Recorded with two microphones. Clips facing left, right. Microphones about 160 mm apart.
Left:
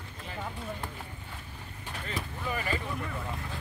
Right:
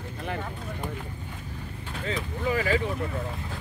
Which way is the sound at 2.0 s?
90° right.